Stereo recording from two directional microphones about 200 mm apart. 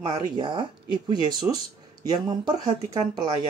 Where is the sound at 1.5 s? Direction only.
10° right (ahead or behind).